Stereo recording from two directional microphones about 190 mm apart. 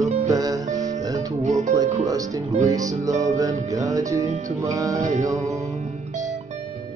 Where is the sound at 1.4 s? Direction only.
35° right (ahead or behind).